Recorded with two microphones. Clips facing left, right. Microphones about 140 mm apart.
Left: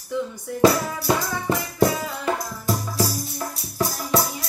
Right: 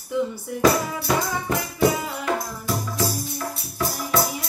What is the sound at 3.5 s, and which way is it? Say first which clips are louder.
Music: left 1 dB; 40° left (ahead or behind).